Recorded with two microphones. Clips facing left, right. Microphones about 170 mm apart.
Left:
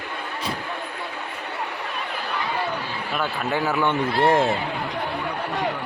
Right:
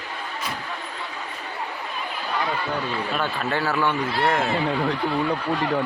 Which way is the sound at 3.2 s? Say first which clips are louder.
Left 4 dB; 5° left (ahead or behind).